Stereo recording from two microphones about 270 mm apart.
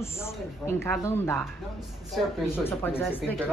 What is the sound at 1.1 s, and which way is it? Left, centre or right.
Speech, centre.